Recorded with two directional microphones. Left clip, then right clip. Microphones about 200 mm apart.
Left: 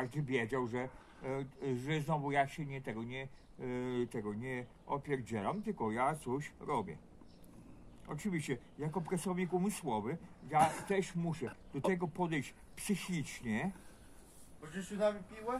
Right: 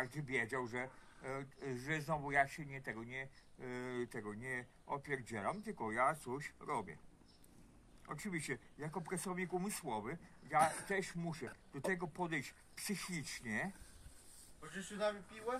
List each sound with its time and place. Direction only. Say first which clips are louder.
0.0 s speech: left 3 dB; 10° right (ahead or behind)
8.1 s speech: left 3 dB; 10° right (ahead or behind)
14.6 s speech: left 5 dB; 45° right (ahead or behind)